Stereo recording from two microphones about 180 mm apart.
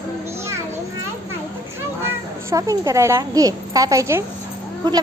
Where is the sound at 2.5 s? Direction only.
20° right (ahead or behind).